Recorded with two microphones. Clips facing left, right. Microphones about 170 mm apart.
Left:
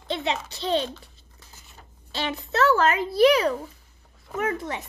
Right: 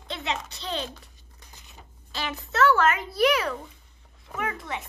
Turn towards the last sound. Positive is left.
turn(degrees=40)  # may be behind; listen again after turning